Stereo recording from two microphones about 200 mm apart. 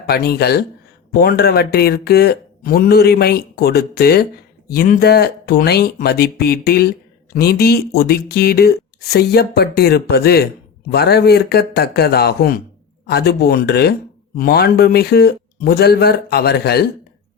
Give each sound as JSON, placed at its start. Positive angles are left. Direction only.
{"t": 0.1, "sound": "speech", "side_deg": 50}